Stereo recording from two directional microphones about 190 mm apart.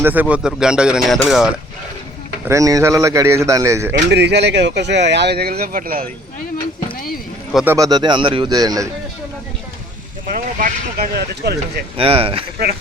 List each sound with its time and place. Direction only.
0.0 s speech: 10° right (ahead or behind)
2.5 s speech: 15° right (ahead or behind)
3.9 s speech: 65° right (ahead or behind); by 6.1 s 45° right (ahead or behind)
7.5 s speech: 10° right (ahead or behind)
10.3 s speech: 55° right (ahead or behind)
11.9 s speech: 30° right (ahead or behind)